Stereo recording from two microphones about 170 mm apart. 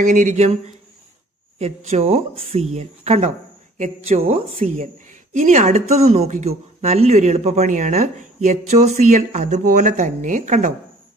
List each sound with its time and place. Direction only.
0.0 s speech: 50° right (ahead or behind)
1.6 s speech: 40° right (ahead or behind)